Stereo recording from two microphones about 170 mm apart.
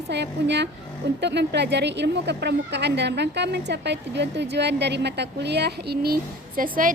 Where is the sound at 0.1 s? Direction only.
90° right; by 6.1 s 70° right (ahead or behind).